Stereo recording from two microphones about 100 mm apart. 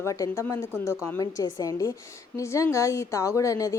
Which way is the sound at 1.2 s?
35° left (ahead or behind).